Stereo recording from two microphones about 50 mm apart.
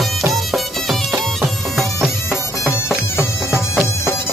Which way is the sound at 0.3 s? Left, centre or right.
Centre.